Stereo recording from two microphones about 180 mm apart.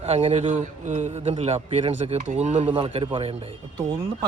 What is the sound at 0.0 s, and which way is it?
A man's voice, 35° right (ahead or behind).